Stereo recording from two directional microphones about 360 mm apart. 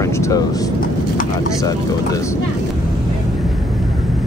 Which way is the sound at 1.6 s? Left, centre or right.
Centre.